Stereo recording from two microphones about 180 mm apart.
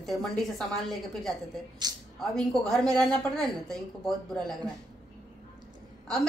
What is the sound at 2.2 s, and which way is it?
Speech, 5° left (ahead or behind).